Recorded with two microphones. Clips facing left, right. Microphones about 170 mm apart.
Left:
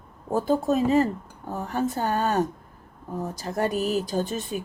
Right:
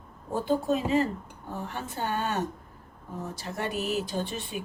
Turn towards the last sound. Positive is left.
turn(degrees=40)  # may be behind; listen again after turning